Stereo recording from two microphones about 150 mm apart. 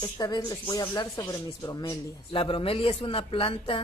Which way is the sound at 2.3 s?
35° left (ahead or behind).